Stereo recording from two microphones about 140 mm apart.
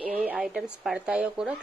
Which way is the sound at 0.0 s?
10° right (ahead or behind).